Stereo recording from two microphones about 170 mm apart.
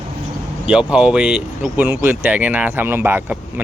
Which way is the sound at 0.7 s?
5° right (ahead or behind).